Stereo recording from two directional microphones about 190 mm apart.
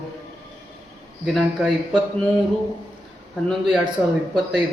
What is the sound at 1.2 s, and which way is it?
Speech, centre (ahead or behind).